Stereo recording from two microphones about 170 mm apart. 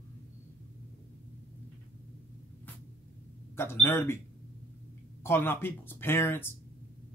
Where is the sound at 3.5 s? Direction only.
15° left (ahead or behind).